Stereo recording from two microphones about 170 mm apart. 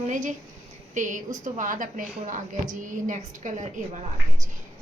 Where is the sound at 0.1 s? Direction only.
45° right (ahead or behind).